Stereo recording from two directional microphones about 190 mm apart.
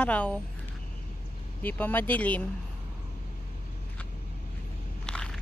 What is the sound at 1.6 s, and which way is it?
Speech, 10° left (ahead or behind).